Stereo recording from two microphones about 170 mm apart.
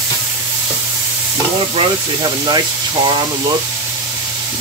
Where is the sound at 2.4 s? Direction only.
25° right (ahead or behind).